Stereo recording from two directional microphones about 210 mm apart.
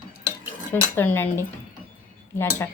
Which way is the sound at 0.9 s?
10° left (ahead or behind).